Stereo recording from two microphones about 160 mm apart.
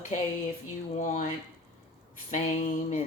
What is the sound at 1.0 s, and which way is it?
Speech, 50° left (ahead or behind).